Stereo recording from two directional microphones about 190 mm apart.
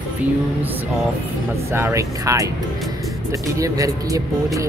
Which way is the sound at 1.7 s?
15° right (ahead or behind).